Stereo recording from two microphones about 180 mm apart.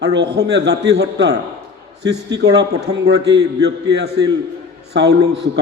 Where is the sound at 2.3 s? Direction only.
70° right (ahead or behind).